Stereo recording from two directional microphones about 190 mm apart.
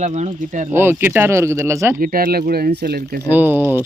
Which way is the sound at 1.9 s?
50° right (ahead or behind).